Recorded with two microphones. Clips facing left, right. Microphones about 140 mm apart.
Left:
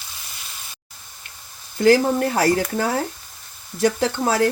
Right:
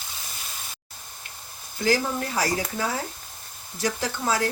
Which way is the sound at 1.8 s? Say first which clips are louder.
Left 9 dB; 60° left (ahead or behind).